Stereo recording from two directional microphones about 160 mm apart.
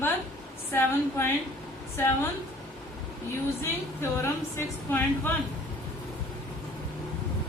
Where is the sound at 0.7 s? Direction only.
15° left (ahead or behind).